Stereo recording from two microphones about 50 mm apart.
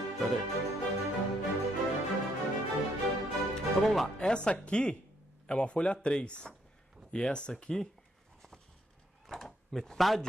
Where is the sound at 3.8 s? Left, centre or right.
Centre.